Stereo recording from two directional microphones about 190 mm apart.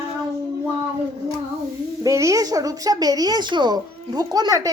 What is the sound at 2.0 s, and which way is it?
Speech, 15° right (ahead or behind).